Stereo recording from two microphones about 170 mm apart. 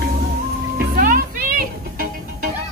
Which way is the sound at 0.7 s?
55° right (ahead or behind).